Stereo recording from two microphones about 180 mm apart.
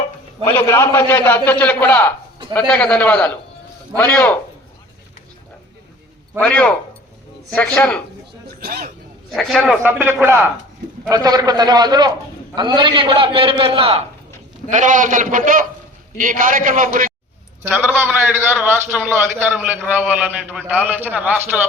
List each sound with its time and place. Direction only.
0.4 s a man's voice: 15° left (ahead or behind)
6.4 s a man's voice: 5° left (ahead or behind)
8.4 s speech: 55° right (ahead or behind)
9.3 s a man's voice: centre (ahead or behind); by 14.0 s 30° right (ahead or behind)
14.7 s a man's voice: 45° right (ahead or behind)
17.7 s a man's voice: centre (ahead or behind)
19.5 s a man's voice: 10° right (ahead or behind)